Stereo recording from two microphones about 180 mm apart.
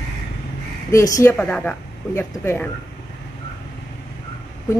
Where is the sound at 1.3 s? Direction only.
5° left (ahead or behind).